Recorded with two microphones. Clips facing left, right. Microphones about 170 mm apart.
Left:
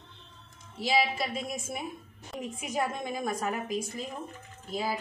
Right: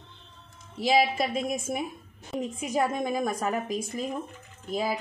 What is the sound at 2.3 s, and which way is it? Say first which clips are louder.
Speech: right 6 dB; centre (ahead or behind).